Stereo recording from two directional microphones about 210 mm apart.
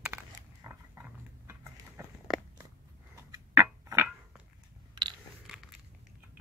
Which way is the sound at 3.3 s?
10° right (ahead or behind).